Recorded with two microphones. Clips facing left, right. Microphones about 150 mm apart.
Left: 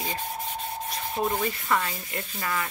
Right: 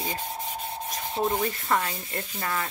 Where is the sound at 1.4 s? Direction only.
25° right (ahead or behind).